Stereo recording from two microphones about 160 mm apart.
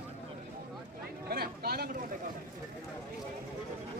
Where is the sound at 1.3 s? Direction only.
75° right (ahead or behind).